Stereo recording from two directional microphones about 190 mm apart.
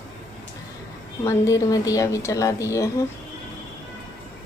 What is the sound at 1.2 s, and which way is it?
A woman's voice, 15° left (ahead or behind).